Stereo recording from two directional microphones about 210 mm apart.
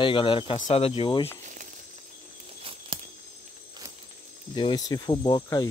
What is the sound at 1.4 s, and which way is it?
Snake, 40° right (ahead or behind).